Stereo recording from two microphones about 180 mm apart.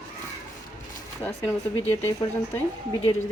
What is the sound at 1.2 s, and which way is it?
Speech, 10° left (ahead or behind).